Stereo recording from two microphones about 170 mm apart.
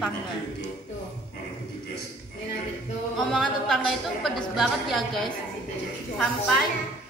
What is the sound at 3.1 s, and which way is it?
A woman's voice, centre (ahead or behind).